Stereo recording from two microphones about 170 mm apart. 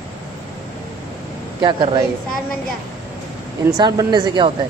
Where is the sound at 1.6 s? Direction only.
25° right (ahead or behind).